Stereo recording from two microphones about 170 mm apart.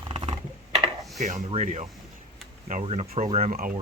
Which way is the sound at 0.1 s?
35° right (ahead or behind).